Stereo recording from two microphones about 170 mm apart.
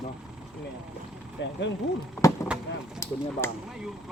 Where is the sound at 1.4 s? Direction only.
90° left.